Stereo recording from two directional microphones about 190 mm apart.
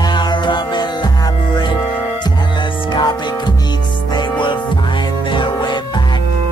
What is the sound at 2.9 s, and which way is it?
Music, 25° left (ahead or behind).